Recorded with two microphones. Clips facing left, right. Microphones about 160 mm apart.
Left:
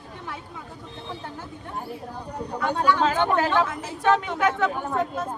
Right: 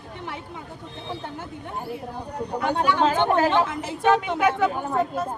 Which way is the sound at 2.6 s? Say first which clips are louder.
Even; 20° right (ahead or behind).